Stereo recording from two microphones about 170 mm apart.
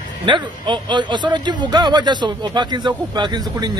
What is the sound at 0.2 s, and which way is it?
Speech, 30° right (ahead or behind).